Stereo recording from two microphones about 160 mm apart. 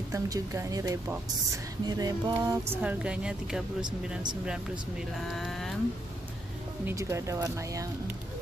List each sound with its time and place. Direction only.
0.1 s a woman's voice: 20° right (ahead or behind); by 3.6 s 5° right (ahead or behind)
5.1 s speech: centre (ahead or behind)
6.9 s speech: 20° right (ahead or behind)